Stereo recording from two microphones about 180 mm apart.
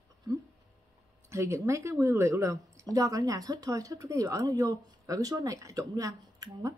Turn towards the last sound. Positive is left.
turn(degrees=-20)  # may be behind; listen again after turning